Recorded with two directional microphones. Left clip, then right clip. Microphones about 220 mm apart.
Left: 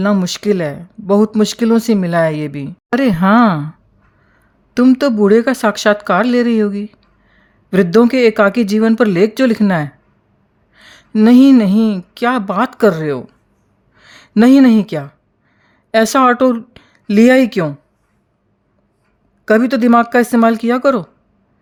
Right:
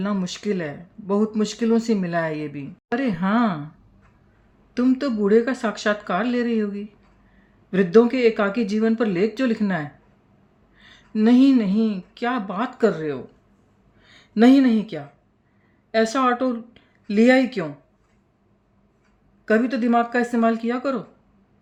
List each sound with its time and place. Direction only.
0.0 s speech: 50° left (ahead or behind)
4.7 s speech: 50° left (ahead or behind)
13.9 s a sound: 55° left (ahead or behind)
15.9 s speech: 50° left (ahead or behind)
19.5 s speech: 50° left (ahead or behind)